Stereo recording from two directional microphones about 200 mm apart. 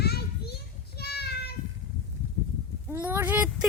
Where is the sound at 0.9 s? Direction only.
55° left (ahead or behind).